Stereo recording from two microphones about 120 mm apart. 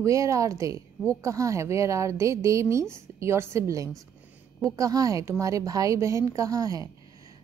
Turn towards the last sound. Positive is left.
turn(degrees=-30)  # may be behind; listen again after turning